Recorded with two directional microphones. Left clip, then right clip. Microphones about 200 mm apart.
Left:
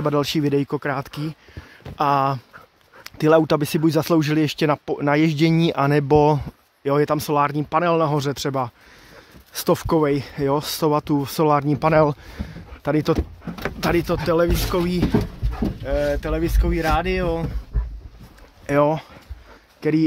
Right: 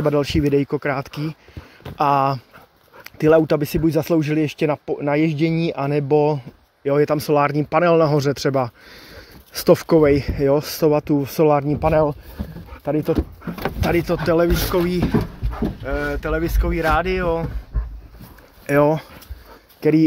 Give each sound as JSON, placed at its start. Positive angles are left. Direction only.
{"t": 0.0, "sound": "speech", "side_deg": 10}
{"t": 6.9, "sound": "speech", "side_deg": 5}
{"t": 12.4, "sound": "speech", "side_deg": -55}
{"t": 12.8, "sound": "speech", "side_deg": 25}
{"t": 13.7, "sound": "speech", "side_deg": 15}
{"t": 18.7, "sound": "speech", "side_deg": 0}